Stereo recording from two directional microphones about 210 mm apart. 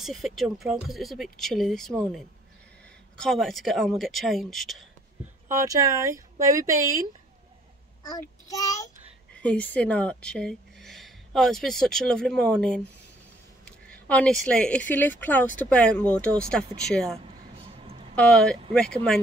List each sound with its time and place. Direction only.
0.0 s speech: centre (ahead or behind)
3.2 s speech: centre (ahead or behind)
5.5 s speech: 15° right (ahead or behind)
8.0 s a child's voice: 15° left (ahead or behind)
9.3 s speech: 5° left (ahead or behind)
17.7 s a sound: 30° right (ahead or behind)
18.1 s speech: 5° left (ahead or behind)